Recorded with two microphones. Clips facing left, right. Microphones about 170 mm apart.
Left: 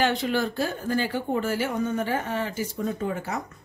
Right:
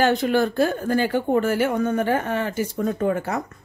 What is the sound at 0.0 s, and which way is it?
Speech, 45° right (ahead or behind).